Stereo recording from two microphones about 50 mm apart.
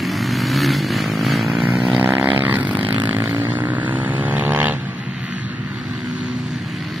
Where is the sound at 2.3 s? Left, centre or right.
Right.